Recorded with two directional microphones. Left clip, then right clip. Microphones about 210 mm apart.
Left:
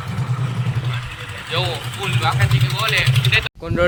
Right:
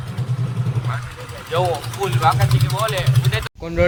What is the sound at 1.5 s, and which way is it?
Speech, 45° right (ahead or behind).